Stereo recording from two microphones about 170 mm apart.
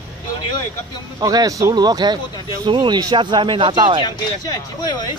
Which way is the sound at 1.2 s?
20° right (ahead or behind).